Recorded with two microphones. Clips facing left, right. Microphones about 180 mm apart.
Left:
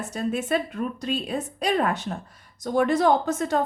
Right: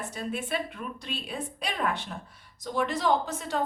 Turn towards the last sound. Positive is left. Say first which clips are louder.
# left 5 dB
turn(degrees=45)  # may be behind; listen again after turning